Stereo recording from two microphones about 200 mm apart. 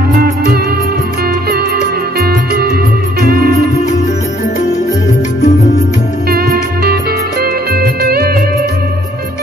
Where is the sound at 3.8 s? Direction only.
35° left (ahead or behind).